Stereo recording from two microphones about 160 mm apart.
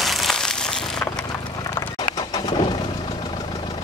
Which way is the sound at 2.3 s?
25° left (ahead or behind).